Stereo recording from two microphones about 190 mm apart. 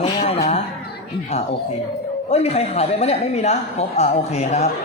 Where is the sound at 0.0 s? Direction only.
30° left (ahead or behind).